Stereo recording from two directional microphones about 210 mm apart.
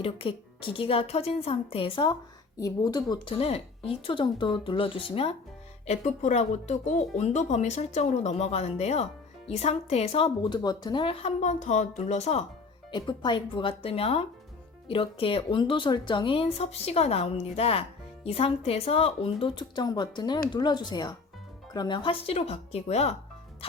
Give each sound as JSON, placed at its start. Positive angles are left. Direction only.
{"t": 0.0, "sound": "speech", "side_deg": 25}